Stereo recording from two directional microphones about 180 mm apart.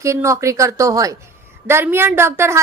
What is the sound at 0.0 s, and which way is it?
A woman's voice, 15° right (ahead or behind).